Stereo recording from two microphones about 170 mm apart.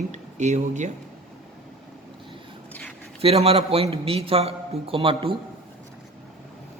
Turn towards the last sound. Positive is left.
turn(degrees=-30)  # may be behind; listen again after turning